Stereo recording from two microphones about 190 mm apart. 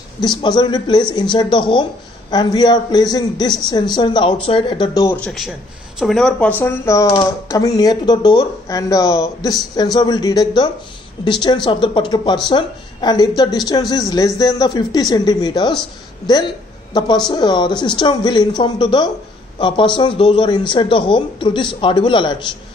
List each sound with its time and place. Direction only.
0.2 s speech: 25° left (ahead or behind)
5.2 s a woman's voice: centre (ahead or behind); by 22.4 s 25° left (ahead or behind)